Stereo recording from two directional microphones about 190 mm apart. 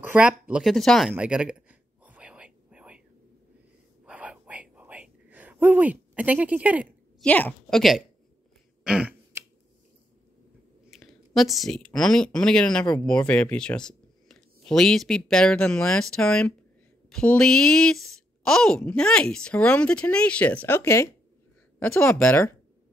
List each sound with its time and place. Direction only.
0.0 s a woman's voice: 5° right (ahead or behind)
1.1 s whispering: 5° right (ahead or behind)
4.0 s whispering: 5° right (ahead or behind)
7.2 s a woman's voice: 10° left (ahead or behind)
8.8 s throat clearing: 5° right (ahead or behind)
10.9 s a woman's voice: centre (ahead or behind)